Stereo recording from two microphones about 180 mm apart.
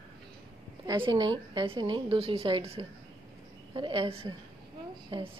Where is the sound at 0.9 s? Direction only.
25° right (ahead or behind).